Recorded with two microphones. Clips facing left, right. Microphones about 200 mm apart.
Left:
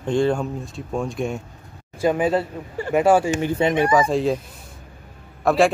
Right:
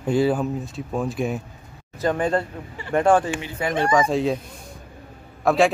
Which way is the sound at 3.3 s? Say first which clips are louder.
Left 7 dB; 45° left (ahead or behind).